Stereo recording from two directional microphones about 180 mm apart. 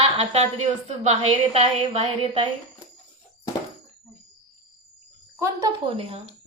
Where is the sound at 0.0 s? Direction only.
35° right (ahead or behind).